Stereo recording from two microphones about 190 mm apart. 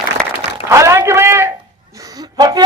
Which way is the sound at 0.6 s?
15° right (ahead or behind).